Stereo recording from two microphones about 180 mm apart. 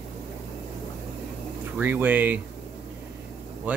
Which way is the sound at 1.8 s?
10° right (ahead or behind).